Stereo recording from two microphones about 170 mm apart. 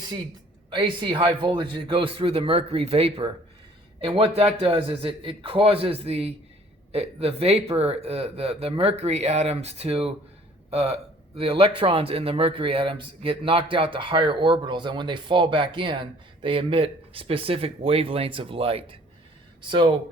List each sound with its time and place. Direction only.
0.7 s a man's voice: 30° right (ahead or behind)